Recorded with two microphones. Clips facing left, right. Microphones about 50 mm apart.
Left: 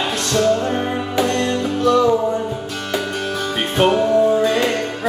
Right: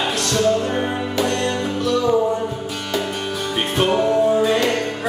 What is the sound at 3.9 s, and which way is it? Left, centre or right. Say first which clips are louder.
Music: even; centre.